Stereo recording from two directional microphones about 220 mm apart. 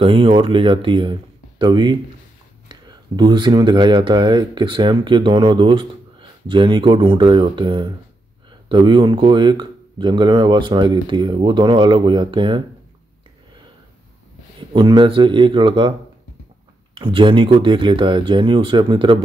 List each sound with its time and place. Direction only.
0.0 s speech: 25° right (ahead or behind)
14.7 s speech: 20° right (ahead or behind)
16.9 s speech: 20° right (ahead or behind)